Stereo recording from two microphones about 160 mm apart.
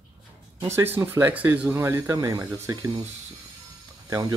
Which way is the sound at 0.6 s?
15° right (ahead or behind).